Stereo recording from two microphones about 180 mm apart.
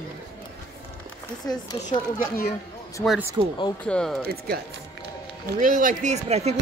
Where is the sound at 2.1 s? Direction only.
55° left (ahead or behind).